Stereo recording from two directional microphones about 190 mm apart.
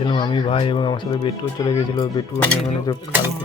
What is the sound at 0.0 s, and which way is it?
Speech, 25° left (ahead or behind).